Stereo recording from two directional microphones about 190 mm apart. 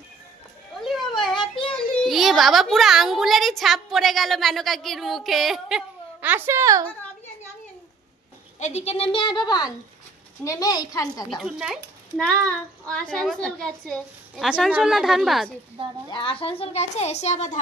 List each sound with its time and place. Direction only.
0.7 s a sound: centre (ahead or behind)
1.7 s a child's voice: centre (ahead or behind); by 6.8 s 15° right (ahead or behind)
8.5 s speech: 35° left (ahead or behind); by 11.2 s 20° left (ahead or behind)
11.2 s a woman's voice: centre (ahead or behind)
16.1 s a woman's voice: 25° left (ahead or behind)